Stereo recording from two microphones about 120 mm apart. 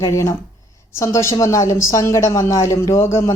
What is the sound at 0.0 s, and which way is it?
Speech, 25° left (ahead or behind).